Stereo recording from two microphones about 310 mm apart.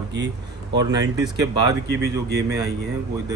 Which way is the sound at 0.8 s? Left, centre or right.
Centre.